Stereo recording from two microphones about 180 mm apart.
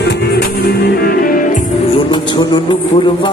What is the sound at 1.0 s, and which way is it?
Music, 55° left (ahead or behind).